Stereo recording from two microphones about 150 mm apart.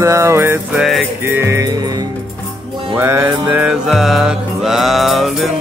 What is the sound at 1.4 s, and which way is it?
Speech, 20° right (ahead or behind).